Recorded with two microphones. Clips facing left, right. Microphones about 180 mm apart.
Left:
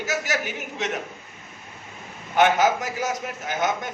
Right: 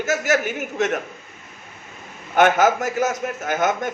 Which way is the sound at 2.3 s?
50° right (ahead or behind).